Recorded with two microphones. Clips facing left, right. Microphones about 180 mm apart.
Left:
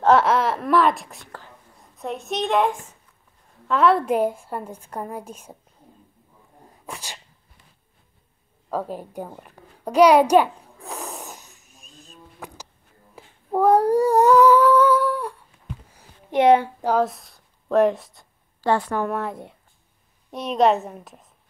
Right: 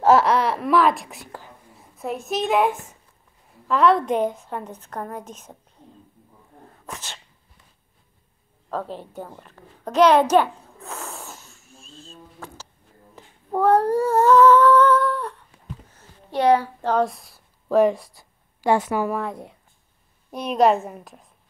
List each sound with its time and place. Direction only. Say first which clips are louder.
0.0 s a woman's voice: even; centre (ahead or behind)
6.7 s sneeze: left 1 dB; 15° left (ahead or behind)
8.6 s a sound: left 2 dB; 10° left (ahead or behind)
13.1 s humming: left 2 dB; 10° left (ahead or behind)
15.9 s a sound: left 5 dB; 15° left (ahead or behind)
16.8 s a woman's voice: even; 5° left (ahead or behind)
18.6 s a woman's voice: right 1 dB; 10° right (ahead or behind)